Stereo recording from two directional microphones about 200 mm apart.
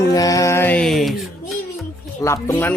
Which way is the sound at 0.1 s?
15° left (ahead or behind).